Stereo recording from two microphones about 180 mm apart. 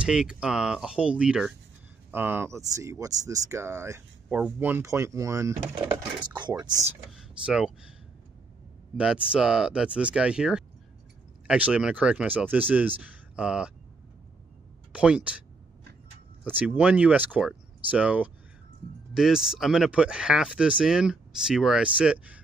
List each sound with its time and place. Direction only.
0.0 s speech: 5° right (ahead or behind); by 6.7 s 25° right (ahead or behind)
7.1 s speech: 5° right (ahead or behind)
8.9 s speech: 5° right (ahead or behind)
14.9 s speech: 5° right (ahead or behind)
16.4 s speech: 10° right (ahead or behind)